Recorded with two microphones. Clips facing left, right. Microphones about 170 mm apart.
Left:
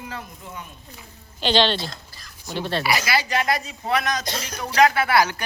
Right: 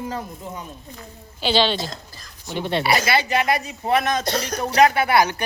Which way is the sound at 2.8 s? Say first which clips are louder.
Right 4 dB; 30° right (ahead or behind).